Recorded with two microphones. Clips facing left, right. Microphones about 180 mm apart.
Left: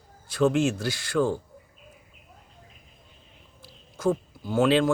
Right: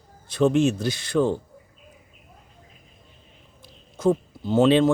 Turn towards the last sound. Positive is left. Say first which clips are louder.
# right 4 dB
turn(degrees=-20)  # may be behind; listen again after turning